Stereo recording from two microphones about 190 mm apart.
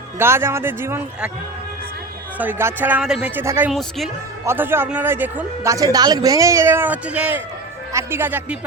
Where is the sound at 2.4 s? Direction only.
10° right (ahead or behind).